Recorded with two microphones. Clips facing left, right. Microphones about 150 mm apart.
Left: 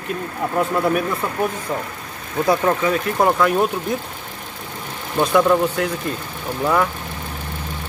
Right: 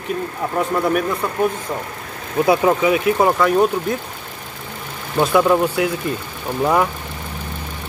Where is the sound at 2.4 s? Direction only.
10° right (ahead or behind).